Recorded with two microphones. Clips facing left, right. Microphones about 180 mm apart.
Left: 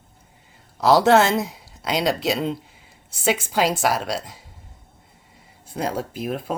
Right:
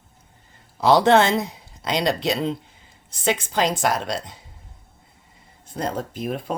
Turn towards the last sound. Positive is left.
turn(degrees=0)  # may be behind; listen again after turning